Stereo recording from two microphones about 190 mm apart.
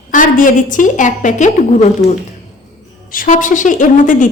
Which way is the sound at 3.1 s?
45° left (ahead or behind).